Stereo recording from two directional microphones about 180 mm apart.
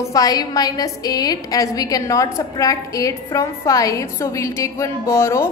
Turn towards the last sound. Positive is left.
turn(degrees=15)  # may be behind; listen again after turning